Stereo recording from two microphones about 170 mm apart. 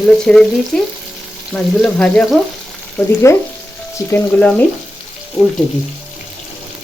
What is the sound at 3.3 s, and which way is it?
Frying, 15° left (ahead or behind).